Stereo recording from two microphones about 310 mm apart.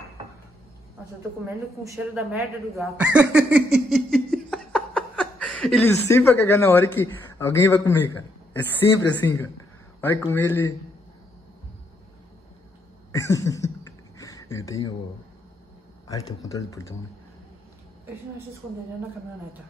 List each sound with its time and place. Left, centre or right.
1.5 s speech: centre
9.2 s speech: centre
13.1 s speech: centre
14.1 s a sound: centre
16.1 s speech: centre